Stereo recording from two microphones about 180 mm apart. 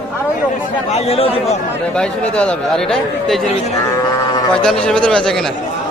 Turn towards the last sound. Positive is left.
turn(degrees=5)  # may be behind; listen again after turning